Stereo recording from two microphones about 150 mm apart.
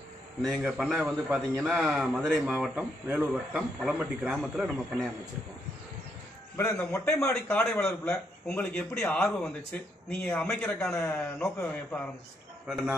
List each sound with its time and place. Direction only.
0.4 s a man's voice: centre (ahead or behind)
6.5 s a man's voice: 15° left (ahead or behind)
12.6 s a man's voice: 5° right (ahead or behind)